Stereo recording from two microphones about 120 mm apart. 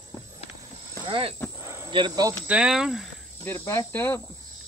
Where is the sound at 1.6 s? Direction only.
20° right (ahead or behind).